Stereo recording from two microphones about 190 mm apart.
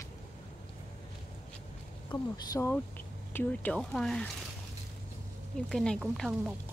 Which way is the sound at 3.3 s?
5° left (ahead or behind).